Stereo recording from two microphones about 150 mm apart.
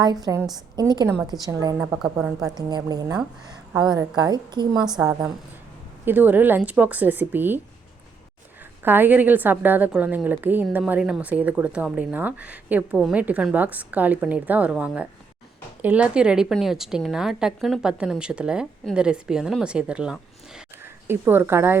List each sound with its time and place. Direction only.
0.0 s a woman's voice: 25° right (ahead or behind)
2.0 s a woman's voice: 5° right (ahead or behind)
2.4 s a woman's voice: 25° right (ahead or behind)
6.1 s a woman's voice: 10° right (ahead or behind)
8.8 s a woman's voice: 15° right (ahead or behind)